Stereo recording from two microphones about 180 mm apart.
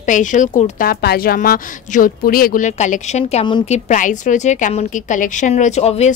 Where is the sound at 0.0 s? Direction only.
45° left (ahead or behind).